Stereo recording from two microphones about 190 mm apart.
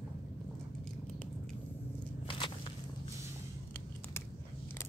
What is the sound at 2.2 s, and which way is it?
Biting, 25° left (ahead or behind).